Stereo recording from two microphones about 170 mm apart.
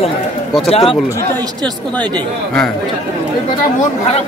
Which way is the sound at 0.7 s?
35° left (ahead or behind).